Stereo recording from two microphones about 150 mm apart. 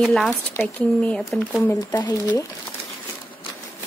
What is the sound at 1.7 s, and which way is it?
Speech, 25° left (ahead or behind).